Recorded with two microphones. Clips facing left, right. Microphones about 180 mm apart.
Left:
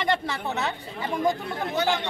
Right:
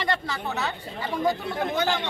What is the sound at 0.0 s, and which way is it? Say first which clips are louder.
Speech: left 2 dB; 20° left (ahead or behind).